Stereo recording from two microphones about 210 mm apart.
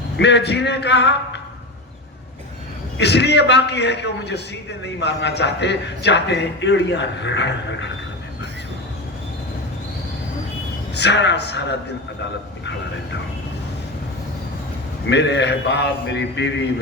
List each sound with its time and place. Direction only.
0.2 s a man's voice: 55° left (ahead or behind)
3.0 s a man's voice: 55° left (ahead or behind)
10.9 s a man's voice: 55° left (ahead or behind)
15.1 s a man's voice: 55° left (ahead or behind)